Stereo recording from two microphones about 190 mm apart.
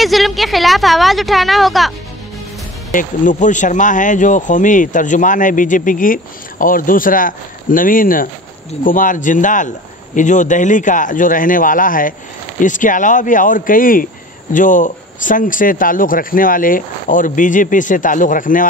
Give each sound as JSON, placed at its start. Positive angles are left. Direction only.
{"t": 0.0, "sound": "a woman's voice", "side_deg": 0}
{"t": 2.9, "sound": "speech", "side_deg": 45}